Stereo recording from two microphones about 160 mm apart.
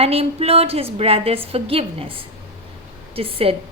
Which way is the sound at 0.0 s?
40° right (ahead or behind).